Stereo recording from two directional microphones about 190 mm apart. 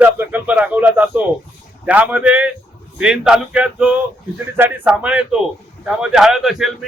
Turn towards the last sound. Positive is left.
turn(degrees=0)  # may be behind; listen again after turning